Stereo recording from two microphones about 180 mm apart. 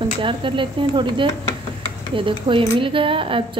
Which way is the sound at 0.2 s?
30° right (ahead or behind).